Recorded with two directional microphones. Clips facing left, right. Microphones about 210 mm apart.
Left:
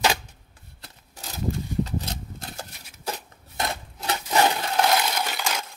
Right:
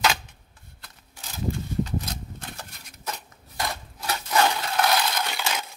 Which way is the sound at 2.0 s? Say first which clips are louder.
Left 1 dB; 35° left (ahead or behind).